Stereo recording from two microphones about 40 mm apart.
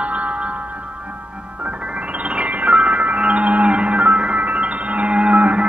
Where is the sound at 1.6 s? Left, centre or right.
Right.